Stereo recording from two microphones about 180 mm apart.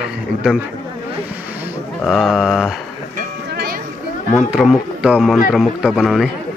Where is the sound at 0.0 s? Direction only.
5° right (ahead or behind).